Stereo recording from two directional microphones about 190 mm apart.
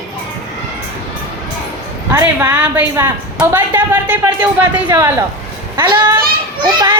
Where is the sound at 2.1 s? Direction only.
10° right (ahead or behind).